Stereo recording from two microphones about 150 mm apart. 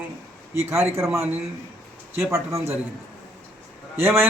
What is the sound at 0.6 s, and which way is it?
Speech, 15° right (ahead or behind).